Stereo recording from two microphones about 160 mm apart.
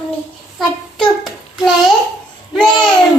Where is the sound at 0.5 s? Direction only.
Centre (ahead or behind).